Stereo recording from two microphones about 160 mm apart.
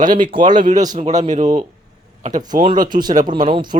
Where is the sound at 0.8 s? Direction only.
25° right (ahead or behind).